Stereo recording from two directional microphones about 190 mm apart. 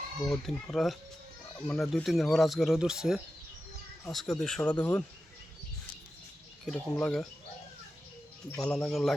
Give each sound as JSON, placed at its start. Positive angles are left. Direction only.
{"t": 0.3, "sound": "speech", "side_deg": 0}
{"t": 6.7, "sound": "speech", "side_deg": 5}
{"t": 8.6, "sound": "speech", "side_deg": 5}